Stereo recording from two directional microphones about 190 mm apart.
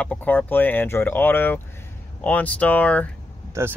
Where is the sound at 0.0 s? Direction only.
10° left (ahead or behind).